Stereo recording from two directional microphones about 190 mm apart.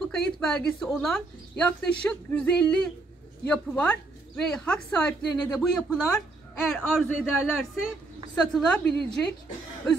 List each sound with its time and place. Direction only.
0.1 s speech: 5° left (ahead or behind)